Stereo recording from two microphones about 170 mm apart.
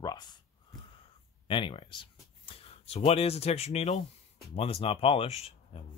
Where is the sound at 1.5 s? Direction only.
30° left (ahead or behind).